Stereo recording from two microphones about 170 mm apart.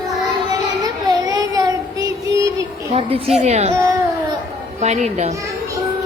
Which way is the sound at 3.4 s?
40° right (ahead or behind).